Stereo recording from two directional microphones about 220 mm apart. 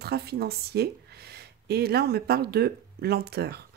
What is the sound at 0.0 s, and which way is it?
Speech, 45° right (ahead or behind).